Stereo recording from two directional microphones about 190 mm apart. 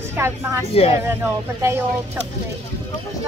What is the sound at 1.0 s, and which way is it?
Speech, 10° right (ahead or behind).